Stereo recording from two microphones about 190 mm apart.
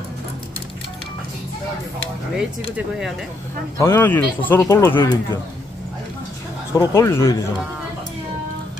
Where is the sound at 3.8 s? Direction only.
15° left (ahead or behind).